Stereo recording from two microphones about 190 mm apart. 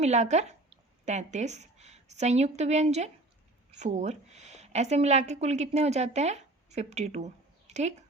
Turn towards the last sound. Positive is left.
turn(degrees=-35)  # may be behind; listen again after turning